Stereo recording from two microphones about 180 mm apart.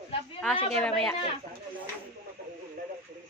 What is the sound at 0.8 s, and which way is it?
Speech, 5° left (ahead or behind).